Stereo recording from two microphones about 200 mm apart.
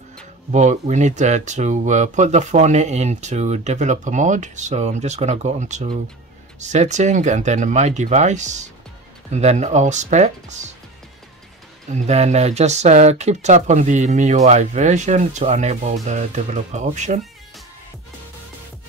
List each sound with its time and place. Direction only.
0.5 s speech: 35° right (ahead or behind)
11.9 s speech: 35° right (ahead or behind)